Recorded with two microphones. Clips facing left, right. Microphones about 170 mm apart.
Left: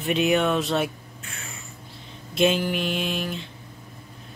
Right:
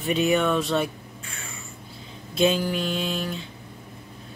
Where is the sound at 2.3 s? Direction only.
Centre (ahead or behind).